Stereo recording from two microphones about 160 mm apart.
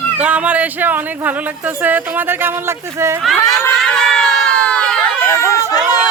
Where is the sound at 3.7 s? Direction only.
Centre (ahead or behind).